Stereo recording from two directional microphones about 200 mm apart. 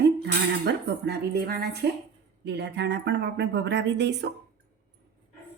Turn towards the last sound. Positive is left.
turn(degrees=-60)  # may be behind; listen again after turning